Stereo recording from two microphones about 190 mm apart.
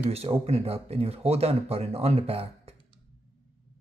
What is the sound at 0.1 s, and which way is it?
Speech, 30° right (ahead or behind).